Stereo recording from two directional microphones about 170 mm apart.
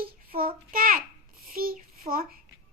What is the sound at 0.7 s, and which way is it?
A child's voice, 55° right (ahead or behind).